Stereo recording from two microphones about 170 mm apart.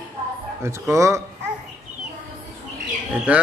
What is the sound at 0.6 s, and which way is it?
Speech, 15° right (ahead or behind).